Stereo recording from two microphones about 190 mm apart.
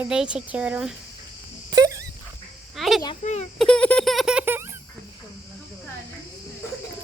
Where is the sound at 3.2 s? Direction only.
35° left (ahead or behind).